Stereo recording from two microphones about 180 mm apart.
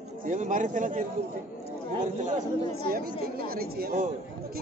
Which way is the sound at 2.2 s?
40° right (ahead or behind).